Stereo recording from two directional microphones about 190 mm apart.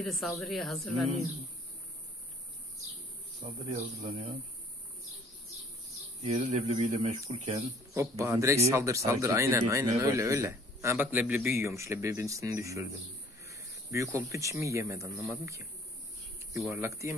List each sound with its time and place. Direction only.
0.0 s speech: centre (ahead or behind)
3.4 s speech: 35° right (ahead or behind)
6.2 s speech: 35° right (ahead or behind)
7.9 s speech: 15° right (ahead or behind)
16.5 s speech: centre (ahead or behind)
16.8 s speech: 15° right (ahead or behind)